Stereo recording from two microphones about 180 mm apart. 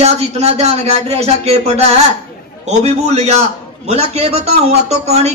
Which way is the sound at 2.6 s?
35° right (ahead or behind).